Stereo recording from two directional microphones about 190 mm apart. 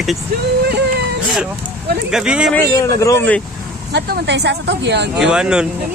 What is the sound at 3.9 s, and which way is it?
Speech, 60° right (ahead or behind).